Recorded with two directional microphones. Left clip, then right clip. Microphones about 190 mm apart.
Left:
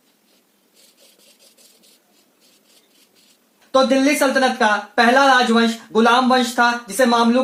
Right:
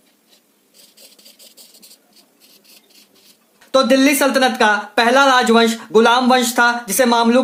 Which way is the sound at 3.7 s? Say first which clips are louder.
Right 2 dB; 30° right (ahead or behind).